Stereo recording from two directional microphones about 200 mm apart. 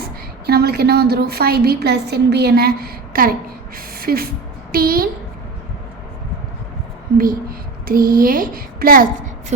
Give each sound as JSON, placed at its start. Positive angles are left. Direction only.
{"t": 0.0, "sound": "a woman's voice", "side_deg": -50}
{"t": 3.9, "sound": "a sound", "side_deg": -50}
{"t": 4.7, "sound": "a woman's voice", "side_deg": -45}
{"t": 7.9, "sound": "a woman's voice", "side_deg": -45}